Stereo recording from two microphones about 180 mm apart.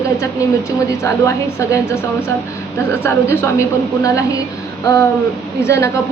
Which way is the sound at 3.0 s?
15° left (ahead or behind).